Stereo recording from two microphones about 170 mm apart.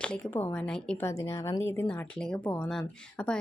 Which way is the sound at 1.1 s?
15° left (ahead or behind).